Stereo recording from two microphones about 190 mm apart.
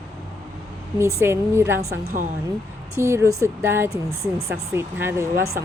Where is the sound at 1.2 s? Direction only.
15° right (ahead or behind).